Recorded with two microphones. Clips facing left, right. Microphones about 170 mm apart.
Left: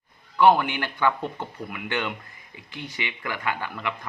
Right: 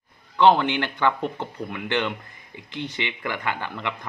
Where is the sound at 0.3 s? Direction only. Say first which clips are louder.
Right 1 dB; 25° right (ahead or behind).